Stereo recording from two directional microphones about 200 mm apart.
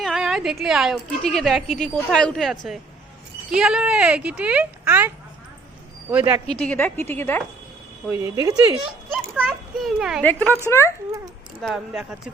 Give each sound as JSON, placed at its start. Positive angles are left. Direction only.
{"t": 0.0, "sound": "a sound", "side_deg": 0}
{"t": 1.2, "sound": "speech", "side_deg": 0}
{"t": 6.6, "sound": "a woman's voice", "side_deg": 5}
{"t": 8.1, "sound": "speech", "side_deg": -15}
{"t": 9.1, "sound": "a child's voice", "side_deg": -5}
{"t": 10.4, "sound": "speech", "side_deg": -15}
{"t": 10.7, "sound": "a woman's voice", "side_deg": 15}
{"t": 11.6, "sound": "speech", "side_deg": -5}